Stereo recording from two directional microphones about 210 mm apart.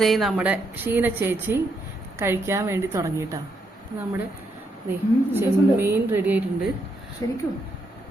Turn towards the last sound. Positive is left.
turn(degrees=15)  # may be behind; listen again after turning